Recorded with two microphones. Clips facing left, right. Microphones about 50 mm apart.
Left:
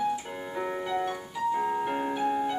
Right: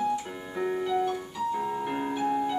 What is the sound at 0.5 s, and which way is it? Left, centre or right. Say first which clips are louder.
Keyboard: right 3 dB; centre.